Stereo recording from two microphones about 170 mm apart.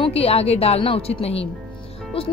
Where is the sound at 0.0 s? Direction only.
35° left (ahead or behind).